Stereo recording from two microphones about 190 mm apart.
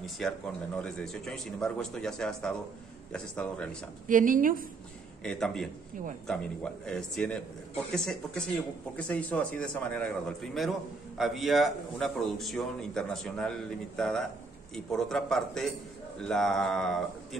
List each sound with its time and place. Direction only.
0.2 s a man's voice: centre (ahead or behind)
4.1 s a woman's voice: 45° right (ahead or behind)
5.2 s a man's voice: 5° left (ahead or behind)